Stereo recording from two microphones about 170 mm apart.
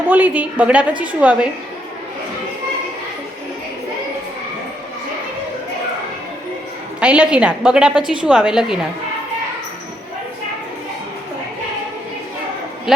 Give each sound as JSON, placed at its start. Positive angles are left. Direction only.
{"t": 0.1, "sound": "a woman's voice", "side_deg": -10}
{"t": 7.0, "sound": "a woman's voice", "side_deg": -5}